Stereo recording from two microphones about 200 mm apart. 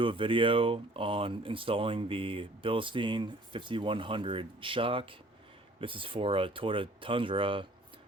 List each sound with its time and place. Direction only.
0.0 s speech: 25° right (ahead or behind)